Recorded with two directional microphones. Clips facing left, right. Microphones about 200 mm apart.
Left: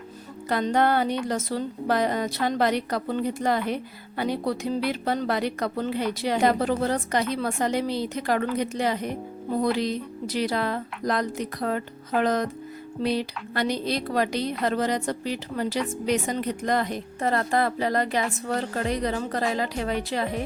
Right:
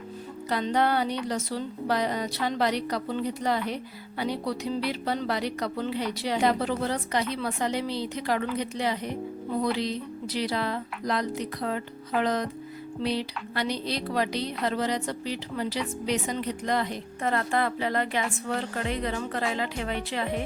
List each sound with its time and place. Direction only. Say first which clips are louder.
0.5 s speech: left 3 dB; 50° left (ahead or behind)
17.2 s speech: left 3 dB; 35° left (ahead or behind)